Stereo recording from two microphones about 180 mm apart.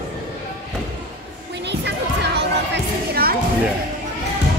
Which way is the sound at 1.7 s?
70° right (ahead or behind).